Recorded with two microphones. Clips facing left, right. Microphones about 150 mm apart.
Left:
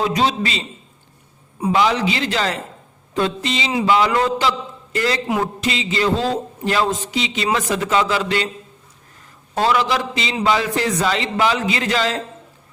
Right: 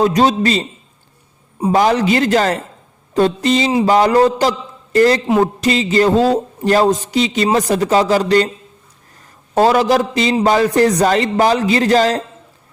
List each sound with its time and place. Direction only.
0.0 s a man's voice: 45° right (ahead or behind)
1.7 s a man's voice: 45° right (ahead or behind)
9.6 s a man's voice: 45° right (ahead or behind)